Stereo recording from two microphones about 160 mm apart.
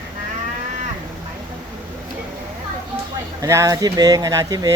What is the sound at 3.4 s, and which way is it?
Speech, 20° right (ahead or behind).